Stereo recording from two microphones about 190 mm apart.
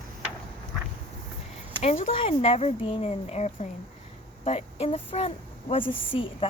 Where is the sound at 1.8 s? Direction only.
30° left (ahead or behind).